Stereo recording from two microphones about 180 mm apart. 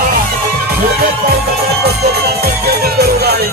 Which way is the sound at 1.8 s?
60° right (ahead or behind).